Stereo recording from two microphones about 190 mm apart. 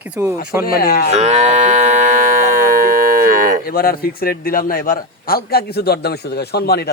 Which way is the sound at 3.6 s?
50° left (ahead or behind).